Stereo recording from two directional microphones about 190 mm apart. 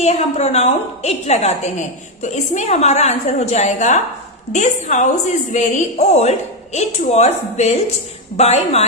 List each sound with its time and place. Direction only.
0.0 s a woman's voice: 35° left (ahead or behind)